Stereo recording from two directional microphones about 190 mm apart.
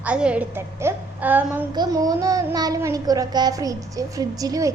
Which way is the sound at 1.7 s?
20° right (ahead or behind).